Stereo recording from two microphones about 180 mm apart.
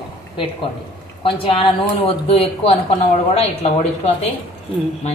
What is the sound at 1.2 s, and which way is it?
A man's voice, 30° left (ahead or behind).